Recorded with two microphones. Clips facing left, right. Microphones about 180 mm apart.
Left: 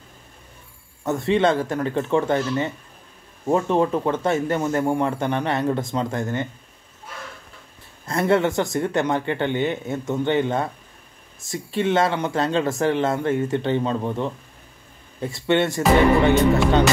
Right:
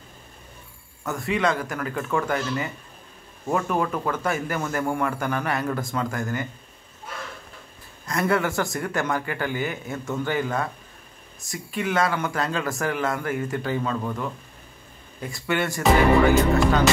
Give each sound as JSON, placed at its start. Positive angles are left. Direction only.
{"t": 1.0, "sound": "speech", "side_deg": 25}
{"t": 8.0, "sound": "speech", "side_deg": 25}